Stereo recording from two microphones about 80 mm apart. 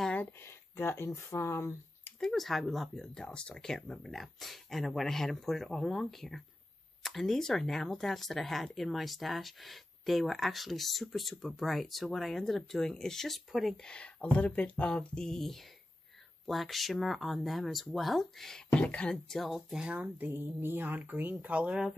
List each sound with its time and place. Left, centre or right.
0.4 s speech: left
2.1 s speech: centre
13.8 s speech: centre
18.7 s speech: centre
20.2 s a woman's voice: right; by 21.9 s centre